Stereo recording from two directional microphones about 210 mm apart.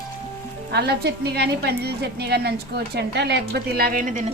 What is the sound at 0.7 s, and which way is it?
A woman's voice, 50° right (ahead or behind).